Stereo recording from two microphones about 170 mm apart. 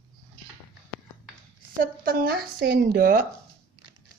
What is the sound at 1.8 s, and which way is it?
Speech, 55° right (ahead or behind).